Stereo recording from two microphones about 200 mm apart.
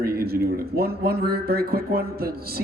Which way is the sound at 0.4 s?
50° right (ahead or behind).